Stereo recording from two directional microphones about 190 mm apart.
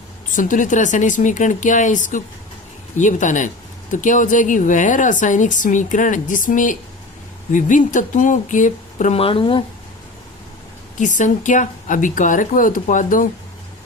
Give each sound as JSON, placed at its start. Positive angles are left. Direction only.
{"t": 0.3, "sound": "speech", "side_deg": 45}
{"t": 11.0, "sound": "speech", "side_deg": 40}